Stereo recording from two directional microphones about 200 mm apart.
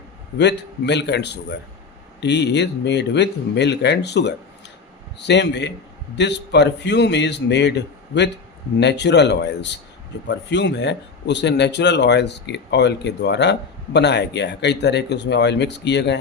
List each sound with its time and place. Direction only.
0.3 s speech: 60° left (ahead or behind)